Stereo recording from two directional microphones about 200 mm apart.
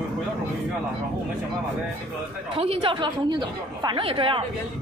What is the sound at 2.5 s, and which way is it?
A woman's voice, 30° right (ahead or behind).